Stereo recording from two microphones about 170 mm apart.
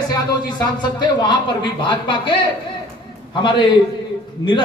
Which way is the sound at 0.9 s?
25° left (ahead or behind).